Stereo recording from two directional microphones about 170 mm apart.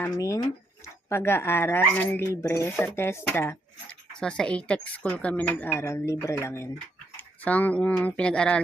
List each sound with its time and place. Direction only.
0.0 s a woman's voice: 15° left (ahead or behind)